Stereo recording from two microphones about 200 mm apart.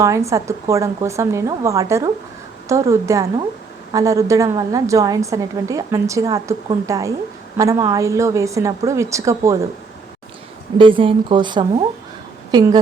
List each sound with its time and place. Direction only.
0.0 s a woman's voice: 15° right (ahead or behind)
10.8 s speech: 25° right (ahead or behind)